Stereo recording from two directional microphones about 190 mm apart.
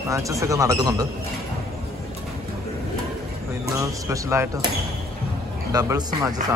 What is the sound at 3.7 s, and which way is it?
Speech, 15° right (ahead or behind).